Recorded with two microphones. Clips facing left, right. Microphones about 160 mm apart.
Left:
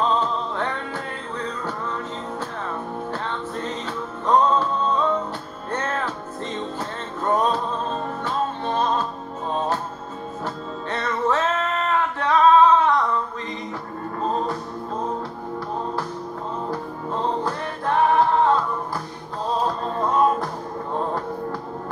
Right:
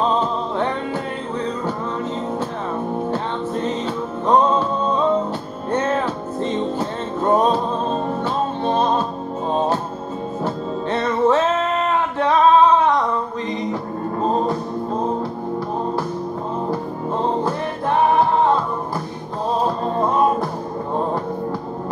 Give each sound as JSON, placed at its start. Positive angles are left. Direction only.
{"t": 0.0, "sound": "music", "side_deg": -20}
{"t": 3.1, "sound": "music", "side_deg": -20}
{"t": 14.2, "sound": "music", "side_deg": -25}
{"t": 16.7, "sound": "music", "side_deg": -20}
{"t": 19.6, "sound": "music", "side_deg": -15}